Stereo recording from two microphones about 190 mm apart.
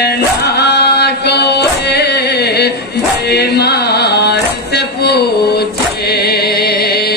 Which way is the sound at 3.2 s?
60° left (ahead or behind).